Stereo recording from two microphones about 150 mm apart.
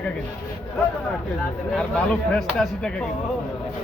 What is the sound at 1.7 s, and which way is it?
Speech, 5° left (ahead or behind).